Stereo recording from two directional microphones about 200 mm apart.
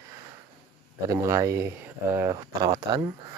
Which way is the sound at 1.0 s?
15° right (ahead or behind).